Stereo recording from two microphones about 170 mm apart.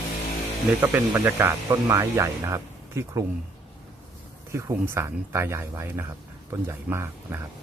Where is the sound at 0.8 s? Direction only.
15° right (ahead or behind).